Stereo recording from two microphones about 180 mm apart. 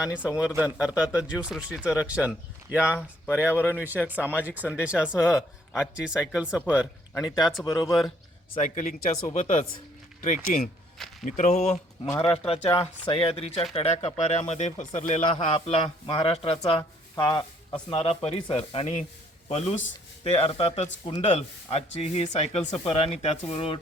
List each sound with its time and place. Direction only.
0.0 s speech: 5° right (ahead or behind)
7.3 s a man's voice: 25° left (ahead or behind)
8.6 s speech: 45° left (ahead or behind)
12.1 s speech: 10° left (ahead or behind)
13.1 s a man's voice: 30° left (ahead or behind)